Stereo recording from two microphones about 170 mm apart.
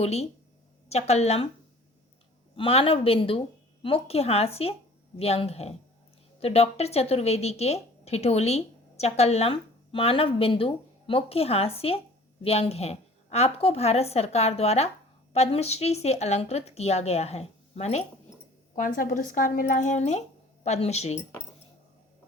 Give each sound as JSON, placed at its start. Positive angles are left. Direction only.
{"t": 0.0, "sound": "speech", "side_deg": 40}
{"t": 2.6, "sound": "speech", "side_deg": 35}
{"t": 18.8, "sound": "speech", "side_deg": 50}